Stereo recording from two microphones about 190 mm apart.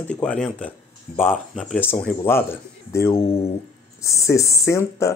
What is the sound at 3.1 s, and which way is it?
Speech, 30° left (ahead or behind).